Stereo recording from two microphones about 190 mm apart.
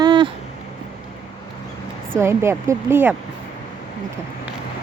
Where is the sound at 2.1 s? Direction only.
15° right (ahead or behind).